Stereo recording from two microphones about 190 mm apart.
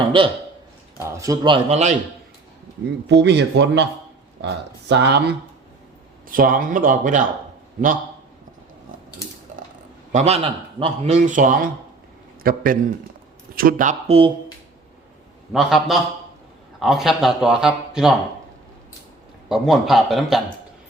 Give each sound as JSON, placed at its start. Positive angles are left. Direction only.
{"t": 0.1, "sound": "a man's voice", "side_deg": -25}
{"t": 0.9, "sound": "a man's voice", "side_deg": -15}
{"t": 3.1, "sound": "speech", "side_deg": -65}
{"t": 6.2, "sound": "speech", "side_deg": -45}
{"t": 10.1, "sound": "speech", "side_deg": -35}
{"t": 14.1, "sound": "a man's voice", "side_deg": -30}
{"t": 15.5, "sound": "speech", "side_deg": 0}
{"t": 19.5, "sound": "speech", "side_deg": 0}